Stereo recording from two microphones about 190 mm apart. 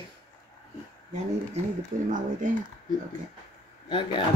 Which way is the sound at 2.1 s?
40° right (ahead or behind).